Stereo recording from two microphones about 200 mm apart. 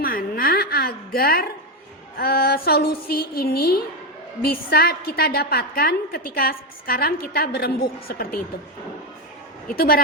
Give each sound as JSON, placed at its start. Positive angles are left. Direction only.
{"t": 0.0, "sound": "a sound", "side_deg": 45}
{"t": 2.1, "sound": "a woman's voice", "side_deg": 50}
{"t": 9.7, "sound": "a woman's voice", "side_deg": 50}